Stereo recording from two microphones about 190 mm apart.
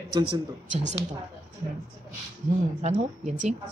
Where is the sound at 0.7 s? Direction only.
40° right (ahead or behind).